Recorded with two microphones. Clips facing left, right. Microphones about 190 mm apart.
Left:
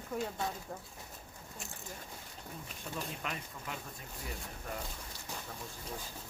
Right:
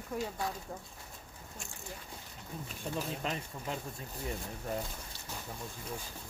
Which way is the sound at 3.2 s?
30° right (ahead or behind).